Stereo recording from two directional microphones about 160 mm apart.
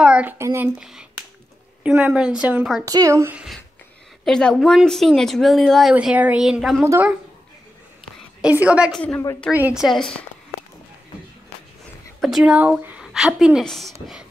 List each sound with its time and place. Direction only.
0.0 s a child's voice: 10° right (ahead or behind)
0.7 s speech: 5° right (ahead or behind)
2.8 s speech: 20° right (ahead or behind)
4.2 s speech: 5° left (ahead or behind)
6.8 s a woman's voice: 15° right (ahead or behind)
8.4 s a woman's voice: 10° right (ahead or behind)
12.2 s speech: centre (ahead or behind)